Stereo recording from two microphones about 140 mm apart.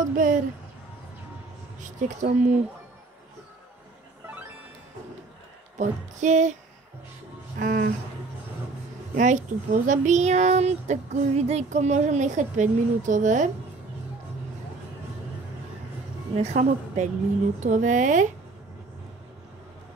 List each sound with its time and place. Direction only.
0.0 s speech: 70° right (ahead or behind)
1.8 s speech: 65° right (ahead or behind)
5.8 s speech: 60° right (ahead or behind)
7.5 s speech: 70° right (ahead or behind)
9.1 s speech: 65° right (ahead or behind)
16.3 s speech: 55° right (ahead or behind)